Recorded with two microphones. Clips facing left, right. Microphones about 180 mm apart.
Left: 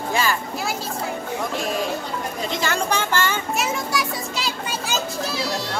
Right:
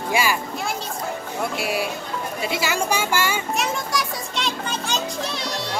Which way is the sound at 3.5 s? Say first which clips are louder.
Left 1 dB; 5° left (ahead or behind).